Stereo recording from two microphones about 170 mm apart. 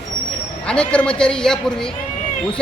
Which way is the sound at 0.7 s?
5° left (ahead or behind).